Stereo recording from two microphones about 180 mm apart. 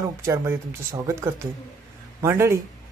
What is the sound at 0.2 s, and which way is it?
A woman's voice, 15° right (ahead or behind).